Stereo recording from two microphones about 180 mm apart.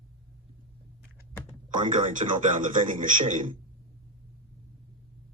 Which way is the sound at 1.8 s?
45° right (ahead or behind).